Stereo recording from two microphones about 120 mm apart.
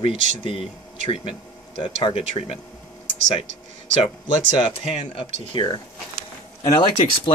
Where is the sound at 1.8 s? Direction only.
45° left (ahead or behind).